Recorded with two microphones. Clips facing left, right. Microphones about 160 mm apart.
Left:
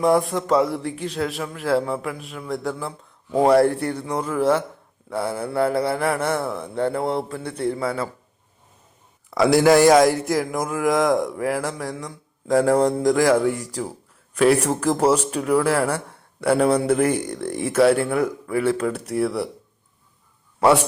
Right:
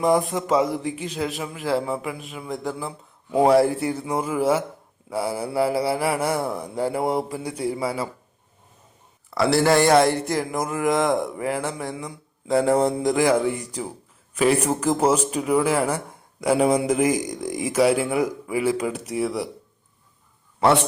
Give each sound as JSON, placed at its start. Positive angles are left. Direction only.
{"t": 0.0, "sound": "speech", "side_deg": 0}
{"t": 6.4, "sound": "speech", "side_deg": -20}
{"t": 6.7, "sound": "speech", "side_deg": -10}
{"t": 9.5, "sound": "speech", "side_deg": 10}
{"t": 20.6, "sound": "a man's voice", "side_deg": 10}